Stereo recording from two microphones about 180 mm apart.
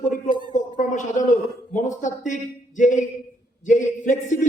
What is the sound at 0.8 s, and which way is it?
A man's voice, 45° left (ahead or behind).